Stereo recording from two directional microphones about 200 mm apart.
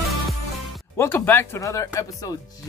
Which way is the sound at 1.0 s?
10° left (ahead or behind).